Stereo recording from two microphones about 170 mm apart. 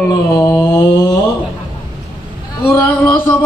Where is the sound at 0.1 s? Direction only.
20° left (ahead or behind).